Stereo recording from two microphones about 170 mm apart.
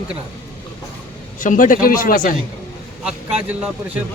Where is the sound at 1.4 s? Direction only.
50° left (ahead or behind).